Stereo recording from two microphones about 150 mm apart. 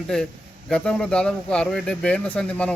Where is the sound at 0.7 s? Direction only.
5° left (ahead or behind).